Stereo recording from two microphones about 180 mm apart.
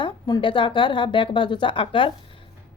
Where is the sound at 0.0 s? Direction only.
25° left (ahead or behind).